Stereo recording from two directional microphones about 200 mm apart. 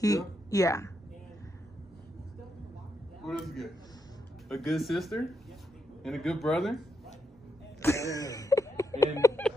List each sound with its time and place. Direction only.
0.0 s speech: 15° left (ahead or behind)
3.3 s speech: centre (ahead or behind)
7.8 s a sound: 15° left (ahead or behind)